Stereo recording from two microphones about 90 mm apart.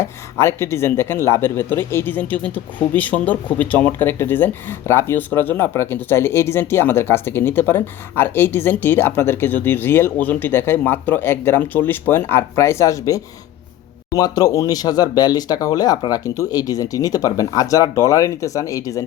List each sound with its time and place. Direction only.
0.0 s speech: 30° left (ahead or behind)